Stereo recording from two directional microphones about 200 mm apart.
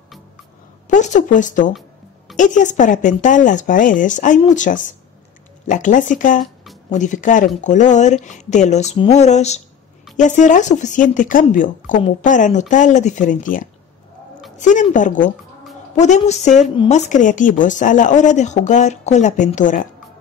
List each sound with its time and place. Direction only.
0.8 s speech: 40° left (ahead or behind)
6.4 s a sound: centre (ahead or behind)
6.9 s speech: 40° left (ahead or behind)
16.7 s speech: 25° left (ahead or behind)
17.1 s speech: 40° left (ahead or behind)